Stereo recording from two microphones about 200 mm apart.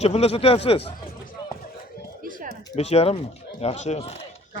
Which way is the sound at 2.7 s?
30° left (ahead or behind).